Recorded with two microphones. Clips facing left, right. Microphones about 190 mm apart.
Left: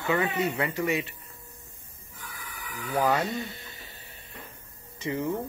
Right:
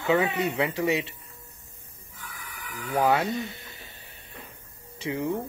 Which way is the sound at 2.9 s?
15° right (ahead or behind).